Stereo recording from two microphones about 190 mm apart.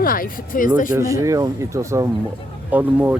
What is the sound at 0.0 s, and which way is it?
Speech, 50° left (ahead or behind).